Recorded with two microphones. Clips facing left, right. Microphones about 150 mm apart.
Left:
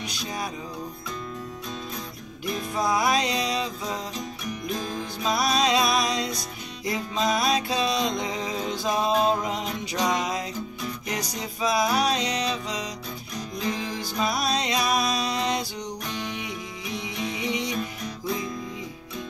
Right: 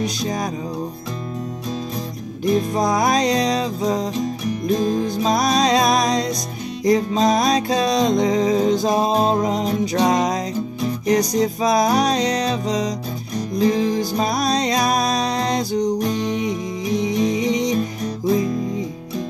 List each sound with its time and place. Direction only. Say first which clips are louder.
0.0 s music: right 9 dB; 40° right (ahead or behind)
2.4 s music: right 9 dB; 40° right (ahead or behind)